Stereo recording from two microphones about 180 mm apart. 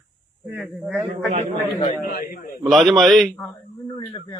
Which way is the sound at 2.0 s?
55° left (ahead or behind).